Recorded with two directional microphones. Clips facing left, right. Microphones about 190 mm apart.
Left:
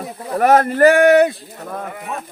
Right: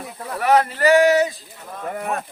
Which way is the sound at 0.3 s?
50° left (ahead or behind).